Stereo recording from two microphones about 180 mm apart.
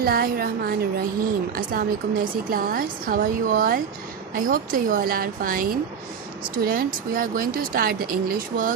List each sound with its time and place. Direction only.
0.0 s a woman's voice: 55° right (ahead or behind)